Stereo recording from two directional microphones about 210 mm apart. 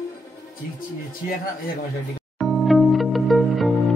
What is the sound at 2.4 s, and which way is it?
Music, centre (ahead or behind).